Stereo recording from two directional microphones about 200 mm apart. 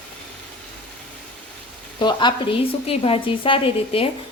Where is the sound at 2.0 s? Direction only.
20° left (ahead or behind).